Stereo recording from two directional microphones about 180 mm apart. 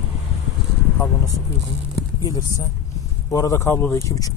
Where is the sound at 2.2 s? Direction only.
20° left (ahead or behind).